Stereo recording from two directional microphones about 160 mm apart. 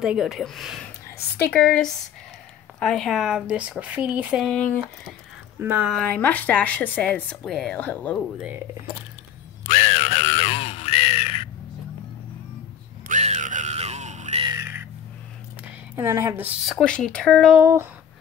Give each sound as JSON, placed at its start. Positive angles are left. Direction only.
{"t": 0.0, "sound": "speech", "side_deg": -5}
{"t": 2.8, "sound": "speech", "side_deg": 0}
{"t": 5.6, "sound": "speech", "side_deg": -10}
{"t": 5.9, "sound": "speech", "side_deg": 10}
{"t": 9.7, "sound": "crow", "side_deg": 45}
{"t": 13.1, "sound": "music", "side_deg": -50}
{"t": 14.4, "sound": "crow", "side_deg": -20}
{"t": 15.6, "sound": "a sound", "side_deg": -15}
{"t": 16.6, "sound": "speech", "side_deg": 5}
{"t": 17.6, "sound": "speech", "side_deg": -15}